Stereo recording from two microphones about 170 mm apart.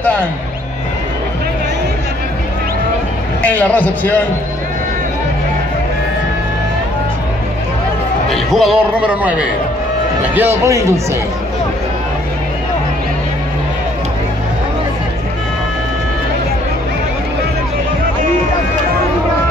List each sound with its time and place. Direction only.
3.4 s a man's voice: 10° left (ahead or behind)
8.3 s a man's voice: centre (ahead or behind); by 11.0 s 20° right (ahead or behind)